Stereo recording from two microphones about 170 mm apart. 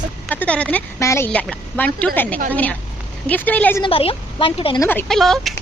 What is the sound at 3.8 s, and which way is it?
A woman's voice, 35° left (ahead or behind).